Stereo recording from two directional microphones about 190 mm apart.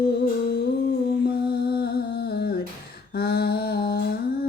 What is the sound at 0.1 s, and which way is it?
Humming, 60° left (ahead or behind).